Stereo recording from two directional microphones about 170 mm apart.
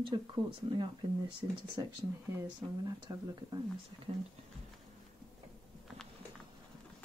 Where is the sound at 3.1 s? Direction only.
20° right (ahead or behind).